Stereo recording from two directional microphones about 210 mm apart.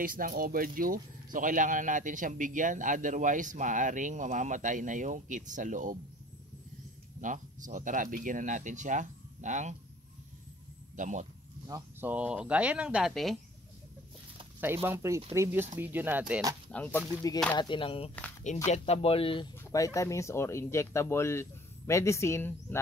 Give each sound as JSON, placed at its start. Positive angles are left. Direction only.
{"t": 0.0, "sound": "speech", "side_deg": -40}
{"t": 7.2, "sound": "speech", "side_deg": -35}
{"t": 11.0, "sound": "speech", "side_deg": -35}
{"t": 11.6, "sound": "speech", "side_deg": -15}
{"t": 14.6, "sound": "speech", "side_deg": -10}
{"t": 16.7, "sound": "speech", "side_deg": 10}
{"t": 19.6, "sound": "speech", "side_deg": 15}